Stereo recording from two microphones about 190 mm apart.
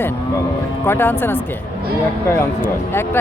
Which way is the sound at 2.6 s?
10° left (ahead or behind).